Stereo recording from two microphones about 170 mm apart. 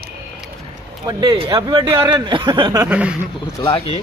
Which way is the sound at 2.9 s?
10° right (ahead or behind).